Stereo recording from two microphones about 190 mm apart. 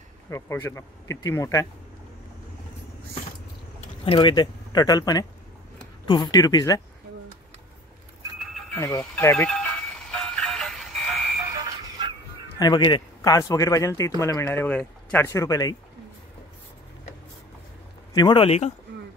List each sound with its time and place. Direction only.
0.3 s speech: 15° left (ahead or behind)
4.0 s speech: 25° left (ahead or behind)
8.5 s music: 10° left (ahead or behind)
12.5 s speech: 20° left (ahead or behind)
18.1 s speech: 25° left (ahead or behind)